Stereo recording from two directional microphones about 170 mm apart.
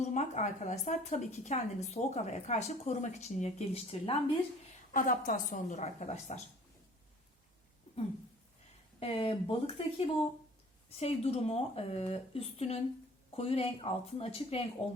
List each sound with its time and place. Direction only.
0.0 s a woman's voice: 45° left (ahead or behind)
4.9 s a woman's voice: 55° left (ahead or behind)
9.0 s speech: 35° left (ahead or behind)